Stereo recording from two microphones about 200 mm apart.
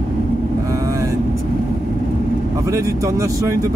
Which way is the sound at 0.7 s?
15° right (ahead or behind).